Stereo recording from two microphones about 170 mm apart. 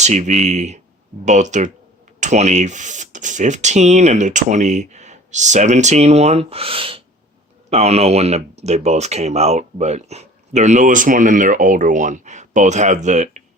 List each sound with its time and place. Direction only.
0.0 s speech: 45° right (ahead or behind)